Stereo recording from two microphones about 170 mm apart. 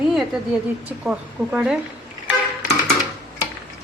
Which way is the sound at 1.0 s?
5° right (ahead or behind).